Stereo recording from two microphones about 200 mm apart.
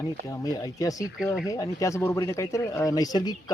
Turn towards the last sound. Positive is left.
turn(degrees=20)  # may be behind; listen again after turning